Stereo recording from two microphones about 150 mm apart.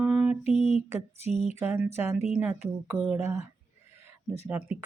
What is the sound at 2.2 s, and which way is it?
Speech, 5° right (ahead or behind).